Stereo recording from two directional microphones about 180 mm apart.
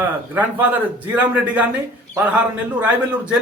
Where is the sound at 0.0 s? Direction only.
10° right (ahead or behind).